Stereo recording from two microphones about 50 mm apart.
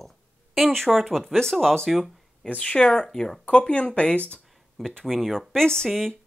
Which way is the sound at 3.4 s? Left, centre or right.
Left.